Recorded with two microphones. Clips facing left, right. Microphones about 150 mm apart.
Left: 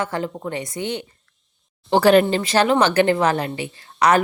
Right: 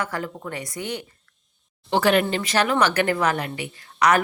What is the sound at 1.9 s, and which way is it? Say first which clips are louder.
Speech: left 5 dB; 35° left (ahead or behind).